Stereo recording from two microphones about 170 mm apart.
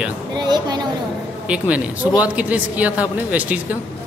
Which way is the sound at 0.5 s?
25° right (ahead or behind).